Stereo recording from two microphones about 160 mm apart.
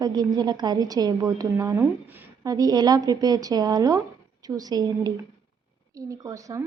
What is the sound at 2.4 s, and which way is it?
A woman's voice, 25° right (ahead or behind).